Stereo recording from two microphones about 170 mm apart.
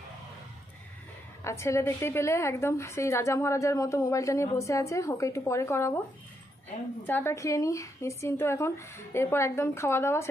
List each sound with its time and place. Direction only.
1.4 s a woman's voice: 15° left (ahead or behind)
7.1 s a woman's voice: 15° left (ahead or behind)